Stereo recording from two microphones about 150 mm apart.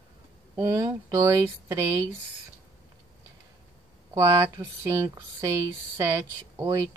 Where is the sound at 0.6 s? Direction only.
20° right (ahead or behind).